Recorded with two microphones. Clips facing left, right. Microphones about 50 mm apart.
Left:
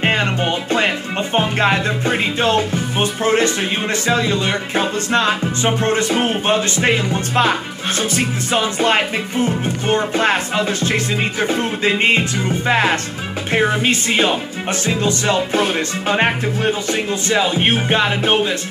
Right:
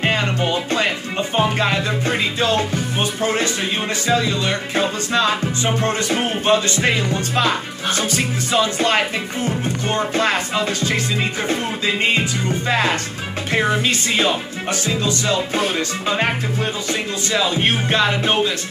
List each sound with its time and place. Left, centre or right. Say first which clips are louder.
0.0 s music: left 2 dB; left
2.1 s speech: left 2 dB; left
5.8 s music: left 3 dB; left
6.2 s speech: even; left
8.8 s music: left 2 dB; left
11.8 s speech: left 4 dB; left
12.4 s music: left 4 dB; left
14.9 s speech: left 3 dB; left
17.3 s music: left 2 dB; left